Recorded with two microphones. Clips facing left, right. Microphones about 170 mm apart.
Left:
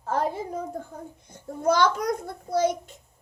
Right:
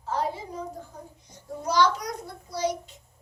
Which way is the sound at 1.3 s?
55° left (ahead or behind).